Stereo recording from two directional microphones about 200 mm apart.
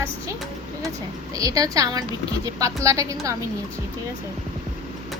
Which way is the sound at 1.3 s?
15° right (ahead or behind).